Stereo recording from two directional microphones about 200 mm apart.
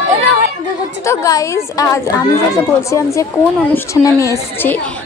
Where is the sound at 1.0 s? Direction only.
15° left (ahead or behind).